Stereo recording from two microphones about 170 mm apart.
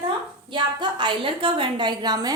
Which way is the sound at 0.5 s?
25° right (ahead or behind).